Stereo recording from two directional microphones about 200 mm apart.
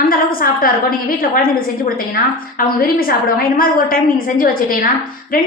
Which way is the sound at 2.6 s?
45° left (ahead or behind).